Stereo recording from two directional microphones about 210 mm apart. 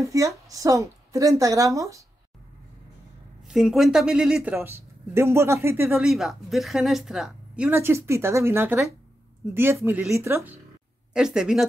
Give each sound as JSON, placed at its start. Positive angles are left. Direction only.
{"t": 0.1, "sound": "speech", "side_deg": -15}
{"t": 3.4, "sound": "speech", "side_deg": 0}